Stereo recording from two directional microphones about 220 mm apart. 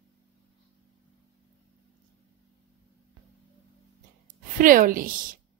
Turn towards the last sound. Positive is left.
turn(degrees=-40)  # may be behind; listen again after turning